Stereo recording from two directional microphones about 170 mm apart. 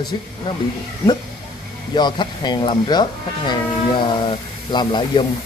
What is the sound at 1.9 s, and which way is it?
Speech, 25° left (ahead or behind).